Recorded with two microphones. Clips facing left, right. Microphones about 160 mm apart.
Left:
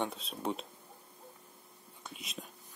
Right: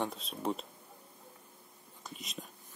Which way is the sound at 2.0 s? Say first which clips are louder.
Right 1 dB; centre (ahead or behind).